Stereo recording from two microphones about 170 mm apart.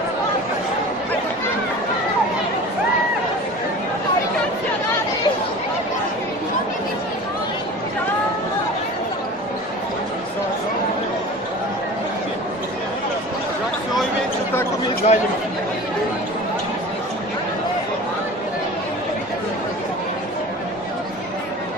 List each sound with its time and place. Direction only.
15.1 s chatter: 40° left (ahead or behind)